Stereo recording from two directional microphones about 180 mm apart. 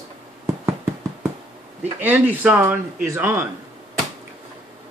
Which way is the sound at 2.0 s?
10° right (ahead or behind).